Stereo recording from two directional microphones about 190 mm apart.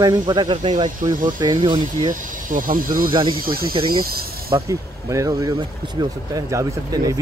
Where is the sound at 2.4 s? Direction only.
45° right (ahead or behind).